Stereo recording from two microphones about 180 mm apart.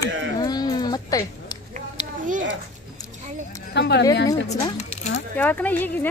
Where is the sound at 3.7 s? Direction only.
70° left (ahead or behind).